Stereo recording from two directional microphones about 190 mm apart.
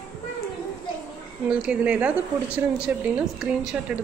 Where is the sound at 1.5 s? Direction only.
5° right (ahead or behind).